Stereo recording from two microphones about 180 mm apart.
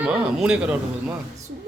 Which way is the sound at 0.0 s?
5° right (ahead or behind).